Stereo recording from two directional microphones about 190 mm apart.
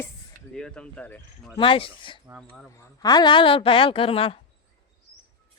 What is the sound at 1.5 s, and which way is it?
Speech, 25° left (ahead or behind).